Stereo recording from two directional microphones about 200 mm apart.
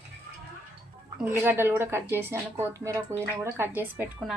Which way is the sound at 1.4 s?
10° right (ahead or behind).